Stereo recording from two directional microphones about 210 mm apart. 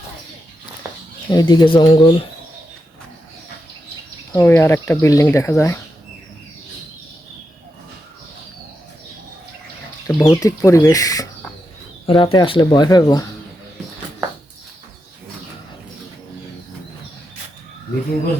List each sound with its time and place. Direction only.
1.3 s speech: 20° left (ahead or behind)
4.3 s speech: 15° left (ahead or behind)
10.1 s speech: 15° left (ahead or behind)